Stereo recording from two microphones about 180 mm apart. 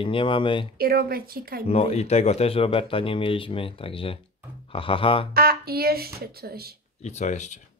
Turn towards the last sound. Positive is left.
turn(degrees=40)  # may be behind; listen again after turning